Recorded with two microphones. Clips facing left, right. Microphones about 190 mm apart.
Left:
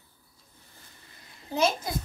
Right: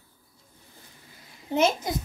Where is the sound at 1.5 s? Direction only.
20° right (ahead or behind).